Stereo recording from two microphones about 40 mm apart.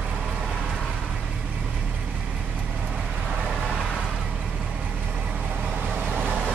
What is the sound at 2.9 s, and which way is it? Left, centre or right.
Vehicle, right.